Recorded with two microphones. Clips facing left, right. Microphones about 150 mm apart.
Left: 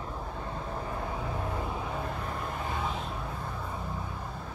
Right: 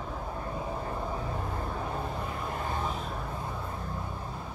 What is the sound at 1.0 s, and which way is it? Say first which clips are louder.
Vehicle: even; 5° left (ahead or behind).